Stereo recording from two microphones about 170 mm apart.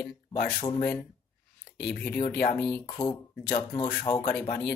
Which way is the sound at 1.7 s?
70° left (ahead or behind).